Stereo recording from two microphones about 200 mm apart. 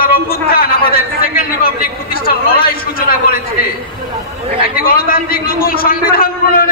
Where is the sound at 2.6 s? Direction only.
45° left (ahead or behind).